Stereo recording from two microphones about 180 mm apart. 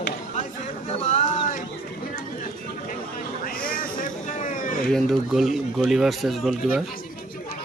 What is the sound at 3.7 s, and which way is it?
Vehicle, 50° left (ahead or behind).